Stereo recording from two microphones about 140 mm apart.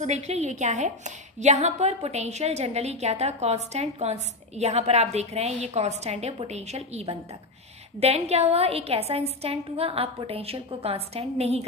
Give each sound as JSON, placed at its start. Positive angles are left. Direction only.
{"t": 0.0, "sound": "a woman's voice", "side_deg": -55}